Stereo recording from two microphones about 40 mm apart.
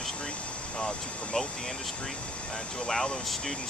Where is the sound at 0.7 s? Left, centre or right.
Centre.